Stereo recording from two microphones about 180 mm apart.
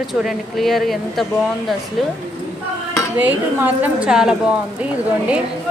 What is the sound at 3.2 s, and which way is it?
A woman's voice, 10° right (ahead or behind).